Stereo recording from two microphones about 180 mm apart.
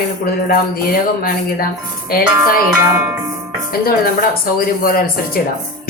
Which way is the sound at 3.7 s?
55° left (ahead or behind).